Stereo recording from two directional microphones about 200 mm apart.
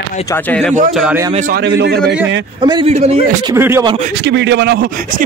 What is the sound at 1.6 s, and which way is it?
Speech, 60° right (ahead or behind).